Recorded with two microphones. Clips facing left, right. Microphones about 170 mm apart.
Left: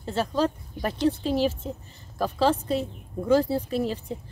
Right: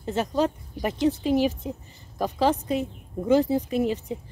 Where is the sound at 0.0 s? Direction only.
20° right (ahead or behind).